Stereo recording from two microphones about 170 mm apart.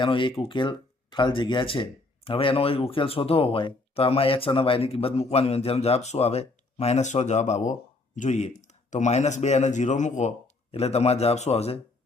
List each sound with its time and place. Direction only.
0.0 s speech: 30° left (ahead or behind)